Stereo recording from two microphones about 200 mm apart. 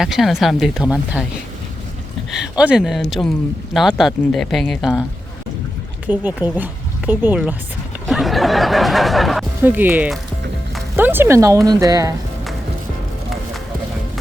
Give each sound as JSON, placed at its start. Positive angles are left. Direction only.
{"t": 0.0, "sound": "speech", "side_deg": 0}
{"t": 2.3, "sound": "speech", "side_deg": -5}
{"t": 6.1, "sound": "speech", "side_deg": -10}